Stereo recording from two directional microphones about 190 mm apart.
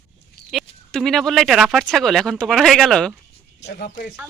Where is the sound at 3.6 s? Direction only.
55° left (ahead or behind).